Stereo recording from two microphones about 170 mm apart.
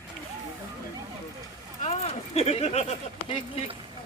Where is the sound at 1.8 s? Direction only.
35° left (ahead or behind).